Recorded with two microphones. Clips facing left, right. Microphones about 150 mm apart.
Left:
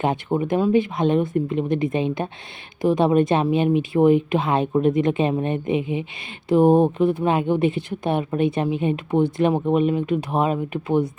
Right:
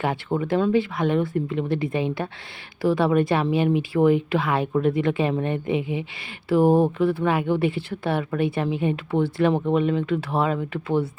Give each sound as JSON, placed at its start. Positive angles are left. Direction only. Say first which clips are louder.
{"t": 0.0, "sound": "speech", "louder": "left 3 dB", "side_deg": 20}